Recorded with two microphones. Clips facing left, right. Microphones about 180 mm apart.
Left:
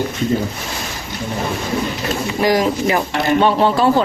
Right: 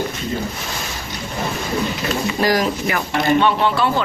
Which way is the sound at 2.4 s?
20° left (ahead or behind).